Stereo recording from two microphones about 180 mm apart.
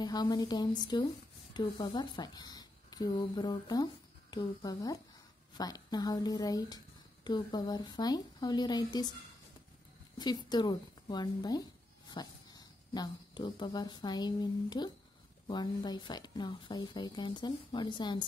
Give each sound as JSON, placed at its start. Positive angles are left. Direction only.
{"t": 0.0, "sound": "speech", "side_deg": 20}
{"t": 10.1, "sound": "speech", "side_deg": 25}